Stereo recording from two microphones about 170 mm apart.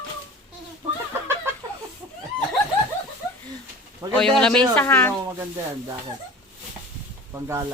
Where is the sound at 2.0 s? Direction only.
15° right (ahead or behind).